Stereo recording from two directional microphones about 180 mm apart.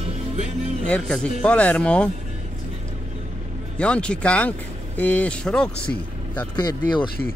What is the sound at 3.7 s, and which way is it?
Speech, 5° left (ahead or behind).